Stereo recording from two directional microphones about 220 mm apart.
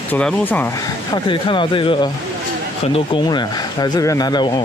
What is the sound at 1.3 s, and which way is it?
Speech, 20° left (ahead or behind).